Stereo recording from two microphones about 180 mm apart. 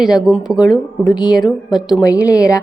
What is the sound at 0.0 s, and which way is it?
A woman's voice, 5° right (ahead or behind).